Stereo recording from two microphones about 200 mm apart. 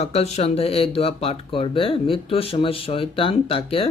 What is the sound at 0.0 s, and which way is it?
Mantra, 30° left (ahead or behind).